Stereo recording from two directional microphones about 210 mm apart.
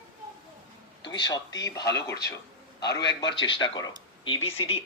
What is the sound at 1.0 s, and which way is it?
A man's voice, 20° left (ahead or behind).